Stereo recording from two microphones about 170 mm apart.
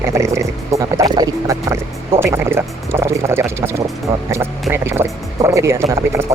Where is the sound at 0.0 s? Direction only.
15° right (ahead or behind).